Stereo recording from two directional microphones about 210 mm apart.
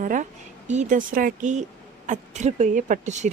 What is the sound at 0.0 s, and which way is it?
A woman's voice, 40° right (ahead or behind).